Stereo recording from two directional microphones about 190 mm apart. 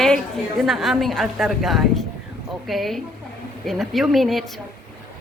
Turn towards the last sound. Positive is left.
turn(degrees=0)  # may be behind; listen again after turning